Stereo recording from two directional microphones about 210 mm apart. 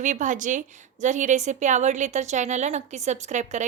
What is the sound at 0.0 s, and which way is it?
A woman's voice, 35° right (ahead or behind).